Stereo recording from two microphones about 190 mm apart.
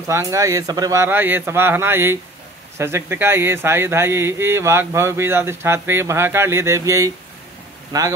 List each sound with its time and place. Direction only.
0.0 s speech: 15° right (ahead or behind)